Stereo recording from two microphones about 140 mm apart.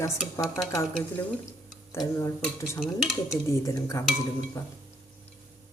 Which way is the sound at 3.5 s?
20° left (ahead or behind).